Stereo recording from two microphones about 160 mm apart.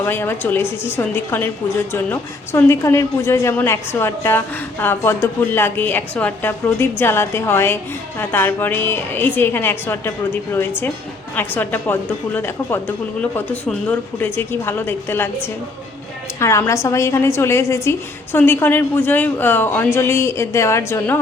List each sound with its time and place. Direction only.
0.0 s a woman's voice: 15° left (ahead or behind)